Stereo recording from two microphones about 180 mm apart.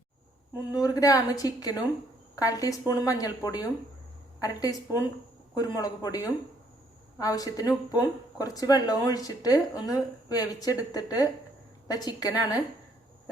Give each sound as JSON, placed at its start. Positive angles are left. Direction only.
{"t": 0.9, "sound": "speech", "side_deg": 20}